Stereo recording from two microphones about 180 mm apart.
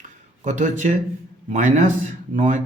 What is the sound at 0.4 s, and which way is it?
Speech, 45° right (ahead or behind).